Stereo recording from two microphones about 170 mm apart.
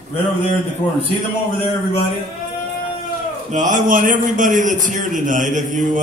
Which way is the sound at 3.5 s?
50° right (ahead or behind).